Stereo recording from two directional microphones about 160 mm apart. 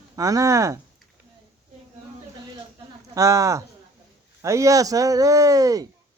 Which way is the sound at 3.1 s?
20° right (ahead or behind).